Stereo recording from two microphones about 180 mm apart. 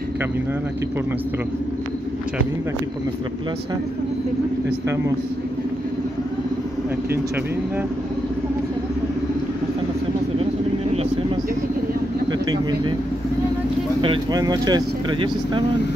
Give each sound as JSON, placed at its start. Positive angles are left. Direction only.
{"t": 4.6, "sound": "speech", "side_deg": -15}
{"t": 14.0, "sound": "speech", "side_deg": -25}